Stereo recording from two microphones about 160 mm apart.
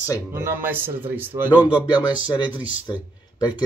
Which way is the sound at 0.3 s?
15° right (ahead or behind).